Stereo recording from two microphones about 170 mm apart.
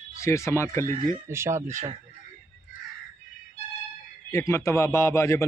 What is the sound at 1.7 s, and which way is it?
Speech, 40° right (ahead or behind).